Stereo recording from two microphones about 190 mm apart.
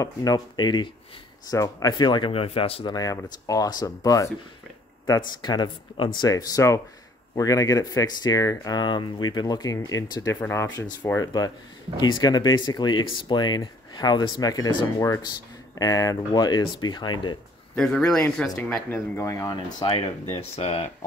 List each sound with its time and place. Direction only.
0.0 s speech: 20° left (ahead or behind)
17.7 s speech: 5° left (ahead or behind); by 20.9 s 35° left (ahead or behind)